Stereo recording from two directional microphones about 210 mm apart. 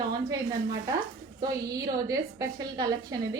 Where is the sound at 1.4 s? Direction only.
15° right (ahead or behind).